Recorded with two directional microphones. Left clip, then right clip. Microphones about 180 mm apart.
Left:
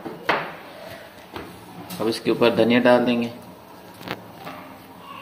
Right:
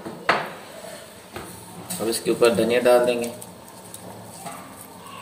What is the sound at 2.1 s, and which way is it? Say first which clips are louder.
Speech: right 1 dB; 30° left (ahead or behind).